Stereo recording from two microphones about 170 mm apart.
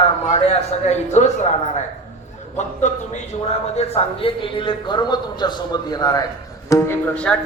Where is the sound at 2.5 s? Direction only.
45° left (ahead or behind); by 6.3 s 20° left (ahead or behind).